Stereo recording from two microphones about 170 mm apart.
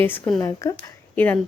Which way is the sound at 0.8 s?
10° left (ahead or behind).